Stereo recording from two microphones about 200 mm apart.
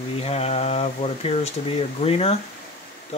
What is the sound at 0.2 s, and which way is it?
Speech, 30° left (ahead or behind).